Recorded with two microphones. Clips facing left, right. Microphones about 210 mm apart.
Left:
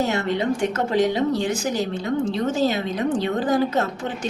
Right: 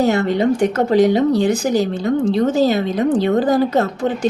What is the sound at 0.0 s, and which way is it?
A woman's voice, 35° right (ahead or behind).